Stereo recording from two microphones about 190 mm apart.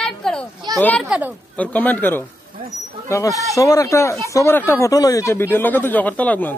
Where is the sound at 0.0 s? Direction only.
5° left (ahead or behind).